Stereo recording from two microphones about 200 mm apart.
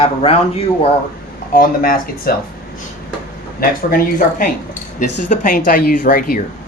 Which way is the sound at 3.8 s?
45° left (ahead or behind).